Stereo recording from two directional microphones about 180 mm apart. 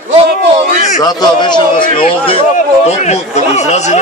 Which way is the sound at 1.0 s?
25° left (ahead or behind).